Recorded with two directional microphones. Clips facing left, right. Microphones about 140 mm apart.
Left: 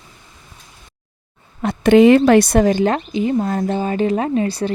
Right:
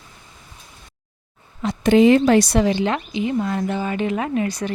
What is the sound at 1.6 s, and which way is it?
Speech, 60° left (ahead or behind).